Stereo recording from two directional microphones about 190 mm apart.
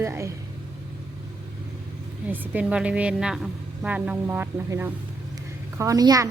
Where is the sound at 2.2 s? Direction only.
10° right (ahead or behind).